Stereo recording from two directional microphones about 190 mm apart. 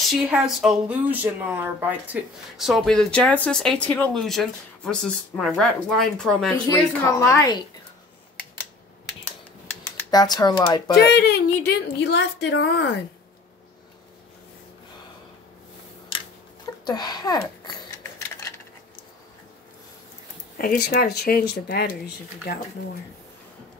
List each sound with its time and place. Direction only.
0.1 s a woman's voice: 5° right (ahead or behind); by 7.5 s 15° left (ahead or behind)
9.9 s speech: 20° left (ahead or behind)
11.1 s a woman's voice: 60° left (ahead or behind)
16.8 s speech: 20° left (ahead or behind)
20.5 s speech: 50° left (ahead or behind)